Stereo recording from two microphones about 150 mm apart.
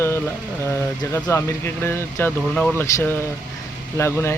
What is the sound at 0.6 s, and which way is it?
Speech, 20° left (ahead or behind).